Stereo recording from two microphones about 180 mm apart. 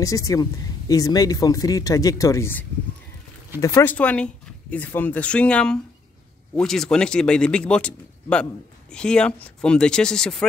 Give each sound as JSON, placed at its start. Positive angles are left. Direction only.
{"t": 0.0, "sound": "speech", "side_deg": 20}